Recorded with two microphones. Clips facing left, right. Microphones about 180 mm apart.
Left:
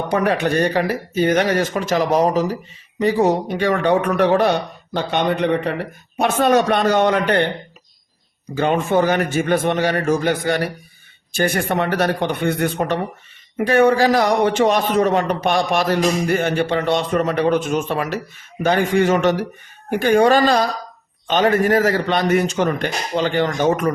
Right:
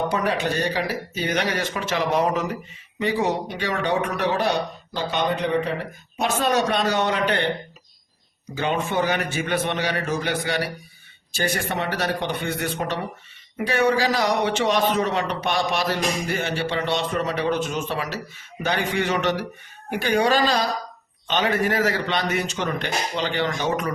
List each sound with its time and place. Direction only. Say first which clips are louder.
0.1 s a man's voice: left 5 dB; 55° left (ahead or behind)
8.5 s a man's voice: left 6 dB; 50° left (ahead or behind)